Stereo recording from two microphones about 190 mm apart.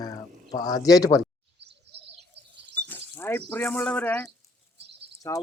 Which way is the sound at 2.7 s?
10° left (ahead or behind).